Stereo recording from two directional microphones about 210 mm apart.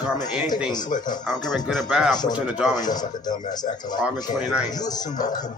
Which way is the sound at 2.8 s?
20° left (ahead or behind).